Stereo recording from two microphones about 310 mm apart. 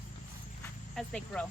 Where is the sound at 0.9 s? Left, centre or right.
Centre.